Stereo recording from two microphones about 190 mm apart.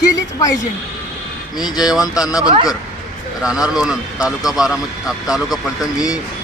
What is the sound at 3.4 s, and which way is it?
Speech, 5° right (ahead or behind).